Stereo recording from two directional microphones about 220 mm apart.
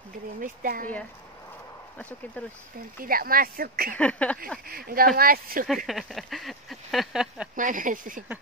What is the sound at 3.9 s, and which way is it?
Speech, 5° left (ahead or behind).